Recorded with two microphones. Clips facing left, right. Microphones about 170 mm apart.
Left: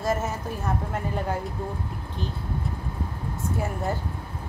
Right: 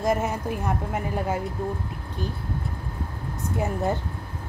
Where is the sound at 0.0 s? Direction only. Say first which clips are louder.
Right 3 dB; 15° right (ahead or behind).